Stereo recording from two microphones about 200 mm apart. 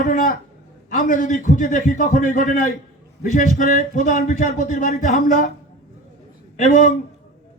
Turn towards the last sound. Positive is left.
turn(degrees=35)  # may be behind; listen again after turning